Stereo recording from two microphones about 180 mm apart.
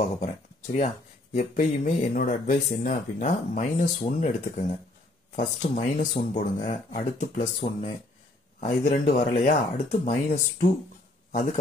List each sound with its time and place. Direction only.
0.0 s speech: 40° left (ahead or behind)